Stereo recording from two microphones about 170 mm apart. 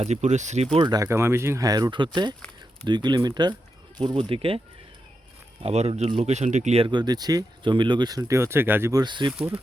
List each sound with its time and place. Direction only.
0.0 s speech: 45° right (ahead or behind)
0.8 s speech: 20° right (ahead or behind)
5.6 s speech: 35° right (ahead or behind)
9.3 s speech: 5° right (ahead or behind)